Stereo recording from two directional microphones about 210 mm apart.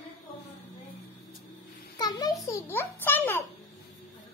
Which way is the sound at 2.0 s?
20° left (ahead or behind).